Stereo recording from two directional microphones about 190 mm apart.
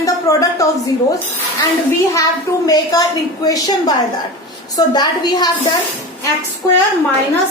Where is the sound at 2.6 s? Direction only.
20° left (ahead or behind).